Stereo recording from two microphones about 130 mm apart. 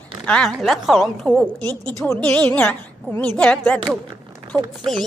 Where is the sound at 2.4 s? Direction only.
10° left (ahead or behind).